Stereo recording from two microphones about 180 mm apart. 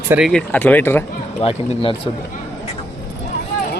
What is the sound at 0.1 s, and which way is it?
Speech, centre (ahead or behind).